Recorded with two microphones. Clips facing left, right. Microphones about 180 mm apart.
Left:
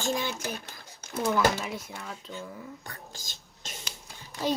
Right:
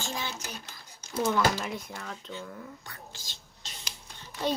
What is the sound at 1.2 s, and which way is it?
Speech, centre (ahead or behind).